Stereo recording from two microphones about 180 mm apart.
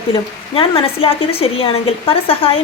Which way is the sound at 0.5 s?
30° left (ahead or behind).